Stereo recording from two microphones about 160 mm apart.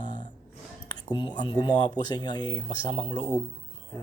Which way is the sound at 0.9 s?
25° left (ahead or behind).